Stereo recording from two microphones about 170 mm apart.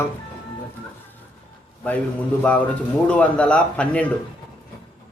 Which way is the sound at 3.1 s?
5° left (ahead or behind).